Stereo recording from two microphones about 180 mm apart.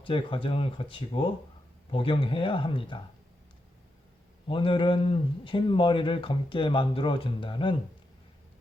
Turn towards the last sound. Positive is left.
turn(degrees=30)  # may be behind; listen again after turning